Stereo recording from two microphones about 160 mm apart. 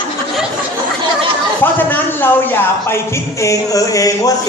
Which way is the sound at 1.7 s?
10° left (ahead or behind).